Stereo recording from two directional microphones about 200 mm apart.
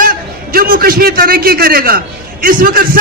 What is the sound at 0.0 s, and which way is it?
A man's voice, 45° right (ahead or behind).